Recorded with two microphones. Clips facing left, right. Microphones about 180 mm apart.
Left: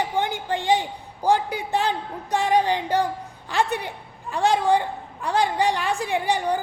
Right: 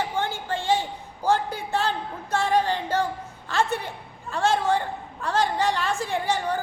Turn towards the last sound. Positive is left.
turn(degrees=15)  # may be behind; listen again after turning